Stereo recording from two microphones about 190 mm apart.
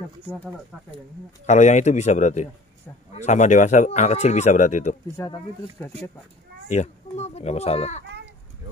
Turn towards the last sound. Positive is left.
turn(degrees=35)  # may be behind; listen again after turning